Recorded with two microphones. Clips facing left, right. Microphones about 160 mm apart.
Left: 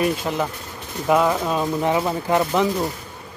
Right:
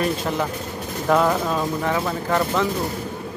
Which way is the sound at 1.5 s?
15° left (ahead or behind).